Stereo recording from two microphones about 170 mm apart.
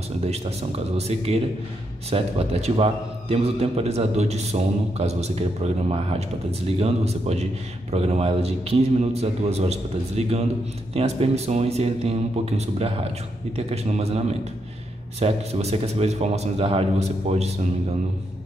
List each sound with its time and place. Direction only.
0.2 s a man's voice: 40° right (ahead or behind)